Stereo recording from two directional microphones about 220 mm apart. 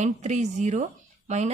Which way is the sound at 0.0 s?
30° right (ahead or behind).